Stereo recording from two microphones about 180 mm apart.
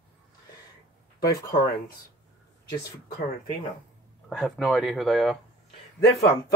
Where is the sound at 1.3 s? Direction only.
20° left (ahead or behind).